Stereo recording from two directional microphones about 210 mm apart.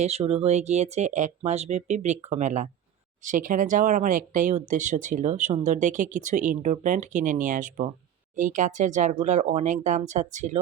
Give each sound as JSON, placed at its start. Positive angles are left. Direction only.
{"t": 0.0, "sound": "speech", "side_deg": -30}